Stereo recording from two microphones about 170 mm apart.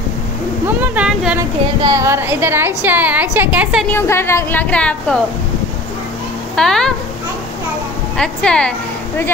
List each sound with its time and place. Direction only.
0.7 s speech: 5° right (ahead or behind)
1.8 s a woman's voice: 20° right (ahead or behind)
3.9 s a woman's voice: 15° left (ahead or behind)
6.5 s a woman's voice: 5° left (ahead or behind)
8.2 s a woman's voice: 5° left (ahead or behind)